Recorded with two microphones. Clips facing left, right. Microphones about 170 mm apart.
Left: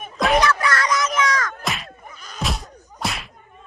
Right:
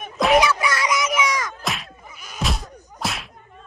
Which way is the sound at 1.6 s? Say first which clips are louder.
Left 1 dB; centre (ahead or behind).